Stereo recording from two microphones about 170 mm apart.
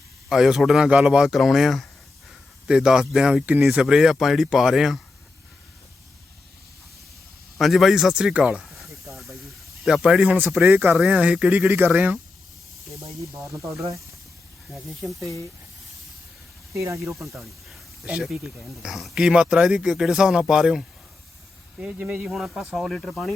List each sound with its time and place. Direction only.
0.3 s speech: 5° right (ahead or behind)
7.6 s speech: centre (ahead or behind)
9.1 s hiss: centre (ahead or behind)
9.8 s speech: 5° right (ahead or behind)
13.3 s speech: 15° right (ahead or behind)
14.7 s speech: centre (ahead or behind)
16.7 s speech: 15° right (ahead or behind)
17.2 s speech: centre (ahead or behind)